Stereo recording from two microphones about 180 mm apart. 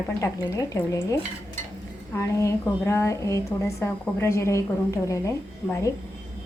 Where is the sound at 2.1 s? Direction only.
15° left (ahead or behind).